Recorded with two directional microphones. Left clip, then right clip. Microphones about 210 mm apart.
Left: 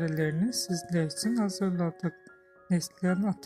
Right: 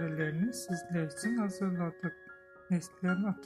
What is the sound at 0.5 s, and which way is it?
Speech, 5° left (ahead or behind).